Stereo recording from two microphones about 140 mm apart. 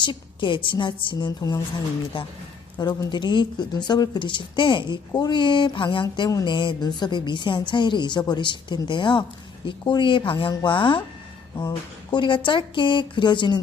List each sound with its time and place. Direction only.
0.0 s speech: 35° left (ahead or behind)
2.1 s speech: 40° left (ahead or behind)
2.7 s speech: 25° left (ahead or behind)